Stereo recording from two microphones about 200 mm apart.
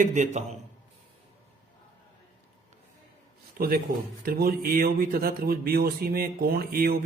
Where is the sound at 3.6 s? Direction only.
50° right (ahead or behind).